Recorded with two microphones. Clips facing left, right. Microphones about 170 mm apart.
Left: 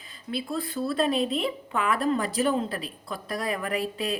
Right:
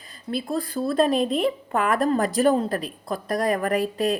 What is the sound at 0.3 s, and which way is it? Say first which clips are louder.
A woman's voice: right 4 dB; 40° right (ahead or behind).